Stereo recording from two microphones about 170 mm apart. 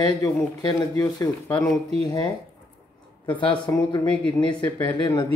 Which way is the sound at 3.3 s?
30° left (ahead or behind).